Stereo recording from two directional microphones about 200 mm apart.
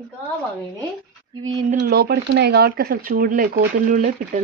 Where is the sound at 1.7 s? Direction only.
50° right (ahead or behind).